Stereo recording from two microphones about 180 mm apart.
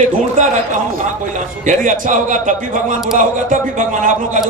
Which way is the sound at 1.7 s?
45° right (ahead or behind).